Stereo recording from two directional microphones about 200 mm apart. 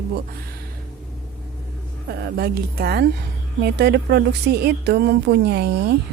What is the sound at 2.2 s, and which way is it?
A woman's voice, 50° right (ahead or behind).